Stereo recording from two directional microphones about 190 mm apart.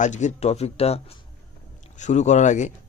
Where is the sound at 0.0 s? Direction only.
40° left (ahead or behind).